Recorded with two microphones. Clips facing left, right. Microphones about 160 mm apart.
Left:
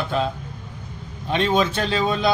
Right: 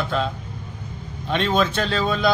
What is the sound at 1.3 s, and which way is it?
A man's voice, 10° left (ahead or behind).